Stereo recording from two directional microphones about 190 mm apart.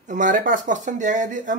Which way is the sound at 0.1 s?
45° right (ahead or behind).